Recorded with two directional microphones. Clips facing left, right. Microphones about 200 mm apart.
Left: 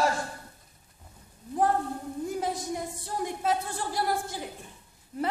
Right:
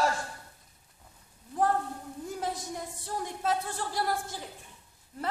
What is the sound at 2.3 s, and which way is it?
Speech, 10° left (ahead or behind).